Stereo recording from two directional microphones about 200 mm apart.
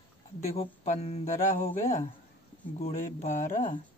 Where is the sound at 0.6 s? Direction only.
30° left (ahead or behind).